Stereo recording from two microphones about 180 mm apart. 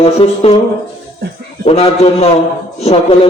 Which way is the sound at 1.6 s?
35° left (ahead or behind).